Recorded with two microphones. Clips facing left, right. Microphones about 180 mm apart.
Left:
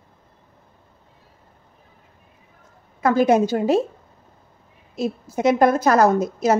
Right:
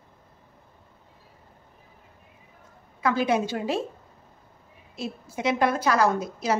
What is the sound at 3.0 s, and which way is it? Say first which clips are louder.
Speech: left 7 dB; 45° left (ahead or behind).